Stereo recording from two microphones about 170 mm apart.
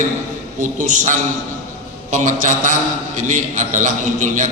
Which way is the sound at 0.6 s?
50° right (ahead or behind).